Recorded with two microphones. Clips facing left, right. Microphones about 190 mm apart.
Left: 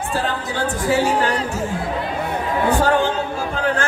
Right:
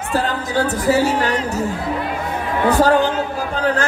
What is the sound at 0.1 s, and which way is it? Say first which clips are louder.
Speech: right 6 dB; 40° right (ahead or behind).